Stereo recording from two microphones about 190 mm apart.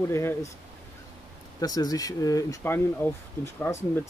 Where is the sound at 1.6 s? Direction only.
20° left (ahead or behind).